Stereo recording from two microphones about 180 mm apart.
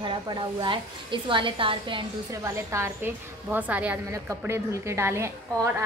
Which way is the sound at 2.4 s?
15° right (ahead or behind).